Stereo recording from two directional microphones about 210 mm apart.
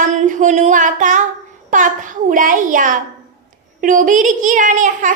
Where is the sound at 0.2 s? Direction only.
35° right (ahead or behind).